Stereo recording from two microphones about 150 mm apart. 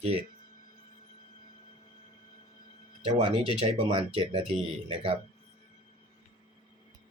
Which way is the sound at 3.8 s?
40° right (ahead or behind).